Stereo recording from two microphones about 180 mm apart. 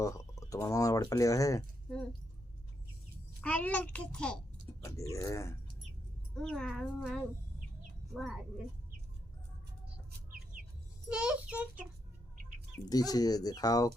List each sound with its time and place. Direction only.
0.0 s speech: 20° left (ahead or behind)
3.4 s a child's voice: 5° left (ahead or behind)
4.8 s a child's voice: 15° left (ahead or behind)
6.3 s a child's voice: 5° left (ahead or behind)
10.1 s chicken: 60° right (ahead or behind)
11.1 s a child's voice: 5° right (ahead or behind)
12.9 s speech: 20° left (ahead or behind)